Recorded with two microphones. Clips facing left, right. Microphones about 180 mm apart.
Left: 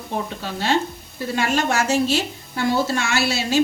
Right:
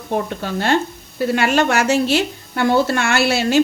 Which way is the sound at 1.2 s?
70° right (ahead or behind).